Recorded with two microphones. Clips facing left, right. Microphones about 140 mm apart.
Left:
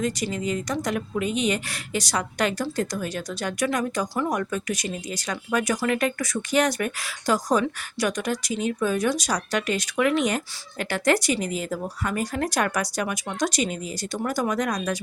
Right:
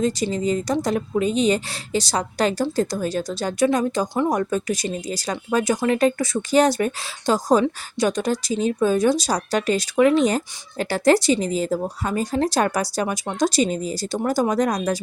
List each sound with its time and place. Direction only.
0.0 s a woman's voice: 30° right (ahead or behind)